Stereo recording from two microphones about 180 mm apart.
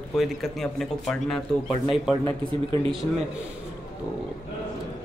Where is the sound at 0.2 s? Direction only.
Centre (ahead or behind).